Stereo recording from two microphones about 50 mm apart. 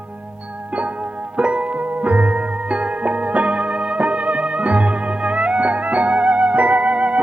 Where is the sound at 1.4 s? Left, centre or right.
Right.